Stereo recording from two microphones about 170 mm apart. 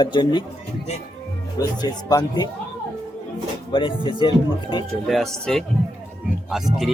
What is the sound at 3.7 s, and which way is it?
Speech, 30° left (ahead or behind).